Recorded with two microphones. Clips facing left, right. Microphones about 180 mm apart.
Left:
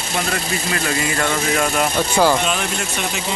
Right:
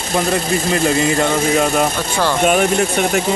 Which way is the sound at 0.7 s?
25° right (ahead or behind).